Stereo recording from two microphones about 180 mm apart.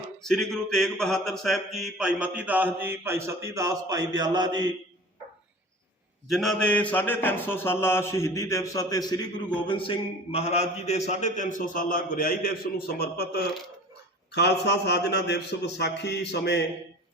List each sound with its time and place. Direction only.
0.2 s speech: 5° left (ahead or behind); by 4.7 s 25° right (ahead or behind)
6.2 s mantra: centre (ahead or behind); by 9.2 s 20° left (ahead or behind)
9.6 s a man's voice: 30° left (ahead or behind); by 16.6 s 70° left (ahead or behind)